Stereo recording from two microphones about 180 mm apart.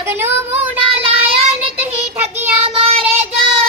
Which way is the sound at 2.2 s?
10° right (ahead or behind).